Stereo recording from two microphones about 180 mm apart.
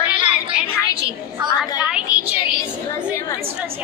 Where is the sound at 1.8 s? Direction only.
5° right (ahead or behind).